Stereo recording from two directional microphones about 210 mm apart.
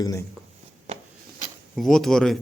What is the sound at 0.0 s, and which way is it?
Speech, 15° left (ahead or behind).